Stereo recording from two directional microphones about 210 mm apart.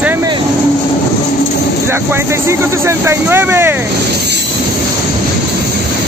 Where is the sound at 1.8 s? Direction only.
10° right (ahead or behind).